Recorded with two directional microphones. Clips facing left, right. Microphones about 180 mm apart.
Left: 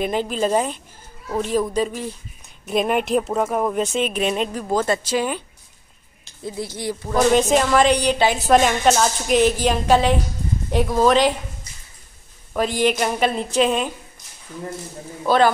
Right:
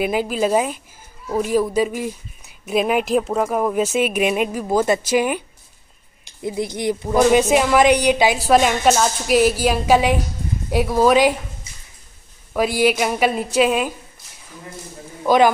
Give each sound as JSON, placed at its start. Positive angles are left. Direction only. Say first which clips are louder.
{"t": 0.0, "sound": "speech", "louder": "right 2 dB", "side_deg": -5}
{"t": 6.4, "sound": "speech", "louder": "right 5 dB", "side_deg": -15}
{"t": 7.2, "sound": "speech", "louder": "right 2 dB", "side_deg": -5}
{"t": 12.5, "sound": "speech", "louder": "right 2 dB", "side_deg": -10}
{"t": 15.2, "sound": "speech", "louder": "right 2 dB", "side_deg": -15}